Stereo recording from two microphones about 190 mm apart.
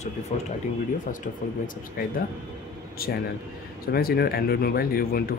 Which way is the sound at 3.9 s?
55° left (ahead or behind).